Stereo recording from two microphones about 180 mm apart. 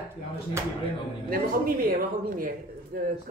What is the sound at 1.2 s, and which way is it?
A man's voice, 55° right (ahead or behind).